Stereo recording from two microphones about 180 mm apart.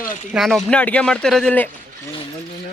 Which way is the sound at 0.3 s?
Centre (ahead or behind).